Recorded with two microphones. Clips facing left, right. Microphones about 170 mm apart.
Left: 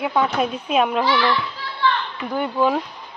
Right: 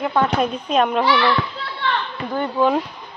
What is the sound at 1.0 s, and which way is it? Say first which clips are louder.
Children playing: right 2 dB; 65° right (ahead or behind).